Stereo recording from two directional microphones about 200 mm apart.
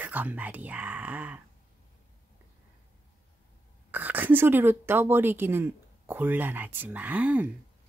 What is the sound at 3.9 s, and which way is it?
A woman's voice, 10° right (ahead or behind).